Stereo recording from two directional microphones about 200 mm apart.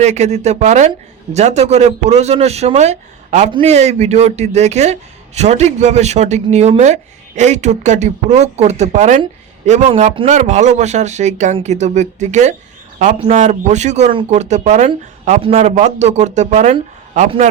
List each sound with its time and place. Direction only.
0.0 s speech: 35° right (ahead or behind)